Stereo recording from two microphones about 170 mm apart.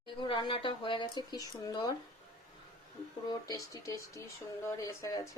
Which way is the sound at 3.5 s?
20° left (ahead or behind).